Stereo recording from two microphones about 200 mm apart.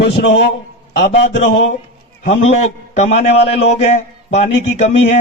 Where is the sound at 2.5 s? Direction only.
35° left (ahead or behind).